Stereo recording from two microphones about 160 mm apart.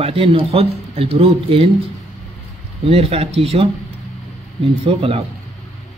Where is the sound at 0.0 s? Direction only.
35° right (ahead or behind).